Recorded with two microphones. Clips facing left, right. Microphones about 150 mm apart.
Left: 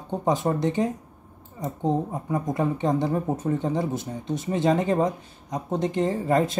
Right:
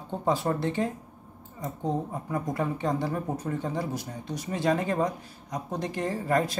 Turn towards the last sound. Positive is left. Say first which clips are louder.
# left 4 dB
turn(degrees=25)  # may be behind; listen again after turning